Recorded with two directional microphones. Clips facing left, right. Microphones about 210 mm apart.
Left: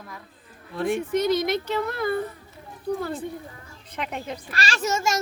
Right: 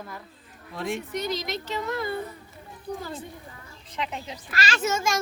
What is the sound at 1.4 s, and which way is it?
Speech, 55° left (ahead or behind).